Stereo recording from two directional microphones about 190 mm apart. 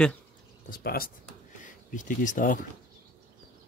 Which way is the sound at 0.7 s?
55° left (ahead or behind).